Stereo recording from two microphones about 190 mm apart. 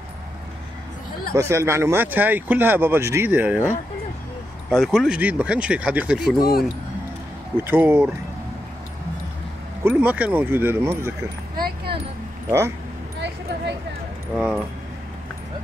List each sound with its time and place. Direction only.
1.3 s speech: 15° right (ahead or behind)
7.6 s speech: 10° right (ahead or behind)
9.8 s speech: 10° right (ahead or behind)
11.6 s a sound: 55° right (ahead or behind)
12.4 s speech: 15° right (ahead or behind)
14.3 s speech: 5° right (ahead or behind)